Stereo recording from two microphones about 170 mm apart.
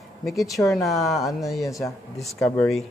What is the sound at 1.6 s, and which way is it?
Speech, 20° left (ahead or behind).